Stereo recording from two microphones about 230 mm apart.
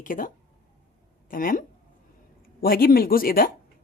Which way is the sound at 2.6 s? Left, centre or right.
Left.